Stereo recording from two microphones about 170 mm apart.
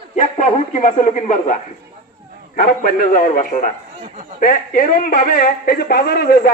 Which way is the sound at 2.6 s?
60° left (ahead or behind).